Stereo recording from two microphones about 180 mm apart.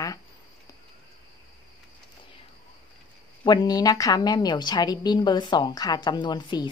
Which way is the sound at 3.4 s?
20° left (ahead or behind).